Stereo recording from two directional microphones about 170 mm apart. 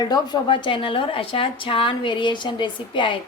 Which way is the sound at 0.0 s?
25° left (ahead or behind).